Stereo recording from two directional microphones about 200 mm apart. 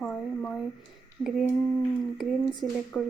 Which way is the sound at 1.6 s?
15° left (ahead or behind).